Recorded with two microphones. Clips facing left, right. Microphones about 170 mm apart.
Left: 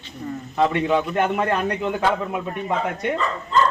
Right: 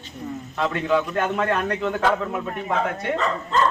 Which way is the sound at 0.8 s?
15° left (ahead or behind).